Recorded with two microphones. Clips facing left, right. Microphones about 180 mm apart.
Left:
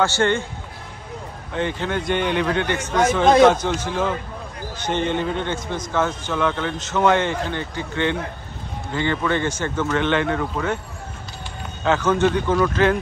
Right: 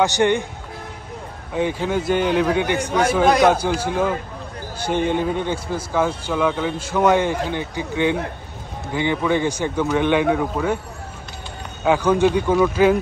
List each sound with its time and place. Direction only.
0.0 s a man's voice: 15° right (ahead or behind)
1.5 s a man's voice: 10° right (ahead or behind)
11.8 s a man's voice: 10° right (ahead or behind)